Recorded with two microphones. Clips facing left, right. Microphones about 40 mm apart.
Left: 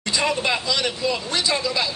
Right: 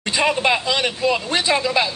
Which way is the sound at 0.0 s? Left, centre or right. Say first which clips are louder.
Right 4 dB; right.